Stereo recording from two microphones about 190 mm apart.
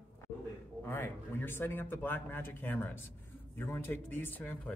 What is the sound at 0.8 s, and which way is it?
Speech, 10° left (ahead or behind).